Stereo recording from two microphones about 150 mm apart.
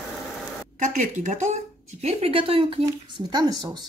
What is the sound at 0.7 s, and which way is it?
Speech, 50° right (ahead or behind).